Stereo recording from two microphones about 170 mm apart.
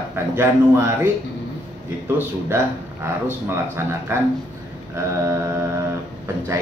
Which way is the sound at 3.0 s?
15° right (ahead or behind).